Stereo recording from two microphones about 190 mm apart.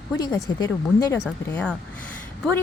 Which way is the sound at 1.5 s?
5° left (ahead or behind).